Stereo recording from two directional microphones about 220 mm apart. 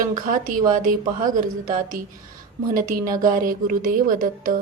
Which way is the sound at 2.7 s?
40° right (ahead or behind).